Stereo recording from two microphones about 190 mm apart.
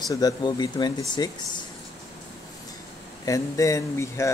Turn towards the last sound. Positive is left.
turn(degrees=15)  # may be behind; listen again after turning